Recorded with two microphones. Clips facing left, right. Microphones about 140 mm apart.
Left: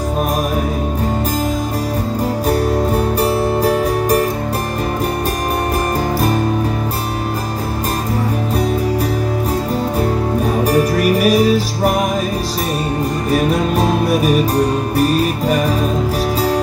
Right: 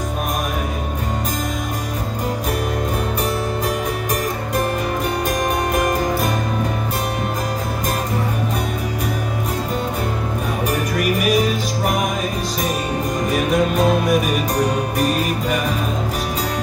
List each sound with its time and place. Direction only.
10.6 s music: 35° left (ahead or behind)